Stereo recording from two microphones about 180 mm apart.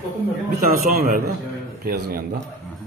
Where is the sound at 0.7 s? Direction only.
55° right (ahead or behind).